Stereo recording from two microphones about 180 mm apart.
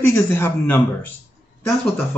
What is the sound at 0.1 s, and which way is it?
Speech, 15° left (ahead or behind).